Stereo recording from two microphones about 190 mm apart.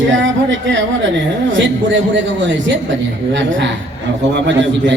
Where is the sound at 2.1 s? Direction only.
70° right (ahead or behind).